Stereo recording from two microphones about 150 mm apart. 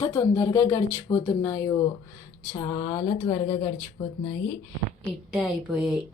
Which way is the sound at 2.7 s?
30° left (ahead or behind).